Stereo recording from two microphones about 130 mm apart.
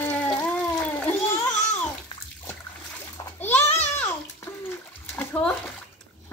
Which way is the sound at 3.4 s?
15° left (ahead or behind).